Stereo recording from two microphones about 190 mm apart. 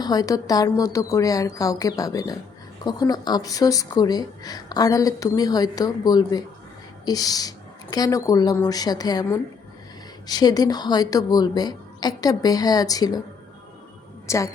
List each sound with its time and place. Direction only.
0.0 s speech: 20° left (ahead or behind)
14.3 s a woman's voice: 15° left (ahead or behind)